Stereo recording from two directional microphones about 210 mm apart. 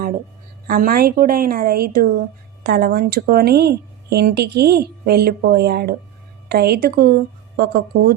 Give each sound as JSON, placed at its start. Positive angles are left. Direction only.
{"t": 0.7, "sound": "a woman's voice", "side_deg": -45}